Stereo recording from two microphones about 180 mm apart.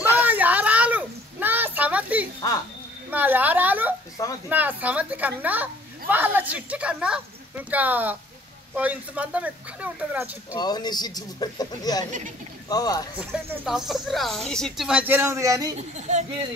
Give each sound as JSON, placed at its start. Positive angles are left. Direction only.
{"t": 0.1, "sound": "a sound", "side_deg": -10}
{"t": 3.1, "sound": "a woman's voice", "side_deg": -10}
{"t": 10.6, "sound": "speech", "side_deg": 25}
{"t": 13.3, "sound": "speech", "side_deg": 0}